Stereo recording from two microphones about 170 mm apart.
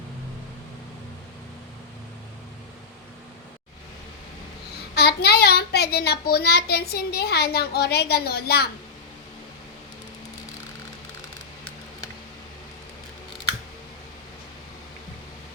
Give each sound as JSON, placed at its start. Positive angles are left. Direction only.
{"t": 4.9, "sound": "a child's voice", "side_deg": 70}